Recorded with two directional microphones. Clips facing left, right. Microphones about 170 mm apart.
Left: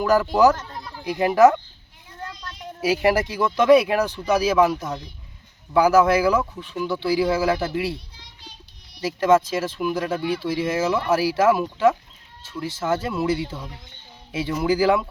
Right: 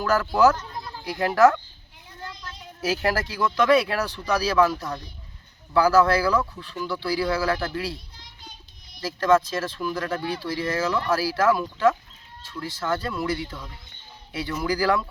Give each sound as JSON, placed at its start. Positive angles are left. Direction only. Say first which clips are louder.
{"t": 0.0, "sound": "speech", "louder": "left 3 dB", "side_deg": 15}
{"t": 2.8, "sound": "speech", "louder": "left 5 dB", "side_deg": 15}
{"t": 9.0, "sound": "speech", "louder": "left 2 dB", "side_deg": 20}